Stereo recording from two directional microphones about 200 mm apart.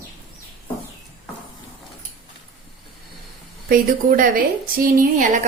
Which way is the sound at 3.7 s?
45° right (ahead or behind).